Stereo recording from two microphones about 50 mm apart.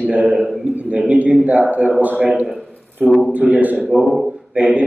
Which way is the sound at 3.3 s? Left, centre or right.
Right.